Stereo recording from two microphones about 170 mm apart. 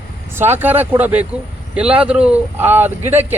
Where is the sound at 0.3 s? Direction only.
15° right (ahead or behind).